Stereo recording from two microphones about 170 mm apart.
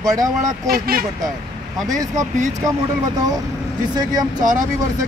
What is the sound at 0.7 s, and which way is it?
Speech, 60° right (ahead or behind).